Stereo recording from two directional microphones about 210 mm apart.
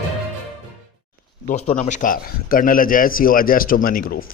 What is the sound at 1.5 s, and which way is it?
A man's voice, 35° left (ahead or behind).